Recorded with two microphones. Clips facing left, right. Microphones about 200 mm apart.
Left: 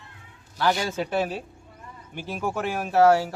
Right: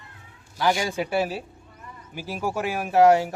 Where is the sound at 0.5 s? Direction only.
10° right (ahead or behind).